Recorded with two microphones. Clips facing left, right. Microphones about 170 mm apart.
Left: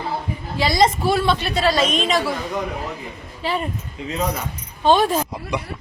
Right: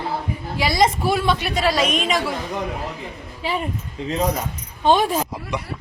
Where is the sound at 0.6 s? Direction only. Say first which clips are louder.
Left 1 dB; 10° right (ahead or behind).